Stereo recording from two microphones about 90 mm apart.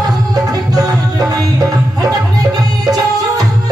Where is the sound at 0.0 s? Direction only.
45° right (ahead or behind).